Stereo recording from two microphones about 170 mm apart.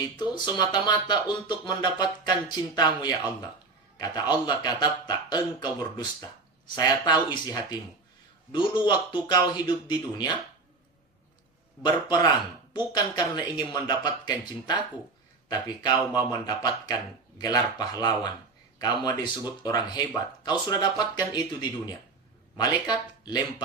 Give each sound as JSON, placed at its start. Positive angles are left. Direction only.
{"t": 0.2, "sound": "a man's voice", "side_deg": 25}
{"t": 11.8, "sound": "speech", "side_deg": 25}